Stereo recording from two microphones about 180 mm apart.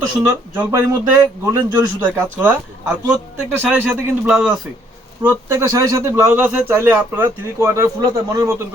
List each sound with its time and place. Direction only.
0.5 s a man's voice: 10° right (ahead or behind)